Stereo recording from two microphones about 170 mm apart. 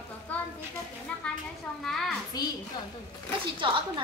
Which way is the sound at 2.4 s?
25° left (ahead or behind).